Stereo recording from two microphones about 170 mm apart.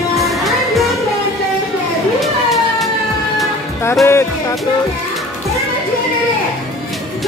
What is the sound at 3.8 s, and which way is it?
Music, 15° left (ahead or behind).